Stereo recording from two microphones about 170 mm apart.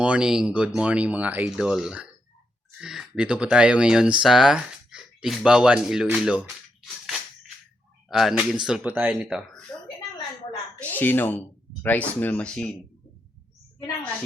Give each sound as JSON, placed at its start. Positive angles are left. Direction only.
{"t": 0.0, "sound": "speech", "side_deg": -5}
{"t": 8.1, "sound": "speech", "side_deg": -5}
{"t": 10.9, "sound": "speech", "side_deg": 10}